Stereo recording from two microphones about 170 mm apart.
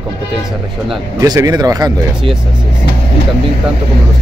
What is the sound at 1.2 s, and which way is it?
Speech, 20° right (ahead or behind).